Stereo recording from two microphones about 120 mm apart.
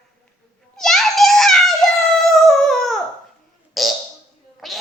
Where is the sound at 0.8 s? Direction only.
5° left (ahead or behind).